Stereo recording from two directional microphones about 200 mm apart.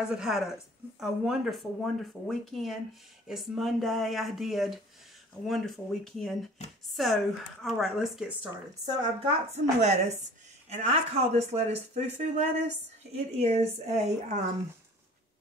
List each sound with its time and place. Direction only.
0.1 s speech: 5° right (ahead or behind)
8.8 s speech: 30° right (ahead or behind)